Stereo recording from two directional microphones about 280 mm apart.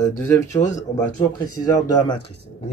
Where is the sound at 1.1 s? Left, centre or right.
Centre.